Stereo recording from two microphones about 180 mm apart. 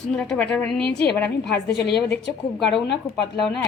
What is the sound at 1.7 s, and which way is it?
Speech, 70° left (ahead or behind).